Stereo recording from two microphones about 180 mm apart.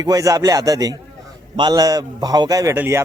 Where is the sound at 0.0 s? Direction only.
20° right (ahead or behind).